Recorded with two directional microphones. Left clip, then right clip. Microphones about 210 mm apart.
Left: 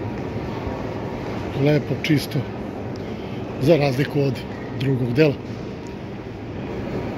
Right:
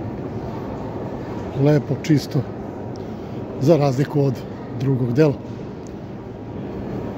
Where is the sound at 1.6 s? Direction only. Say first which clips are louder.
Right 1 dB; 25° right (ahead or behind).